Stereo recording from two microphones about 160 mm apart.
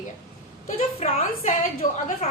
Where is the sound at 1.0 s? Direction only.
45° left (ahead or behind).